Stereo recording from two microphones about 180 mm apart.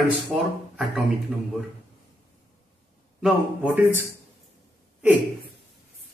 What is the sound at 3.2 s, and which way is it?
Speech, 10° right (ahead or behind).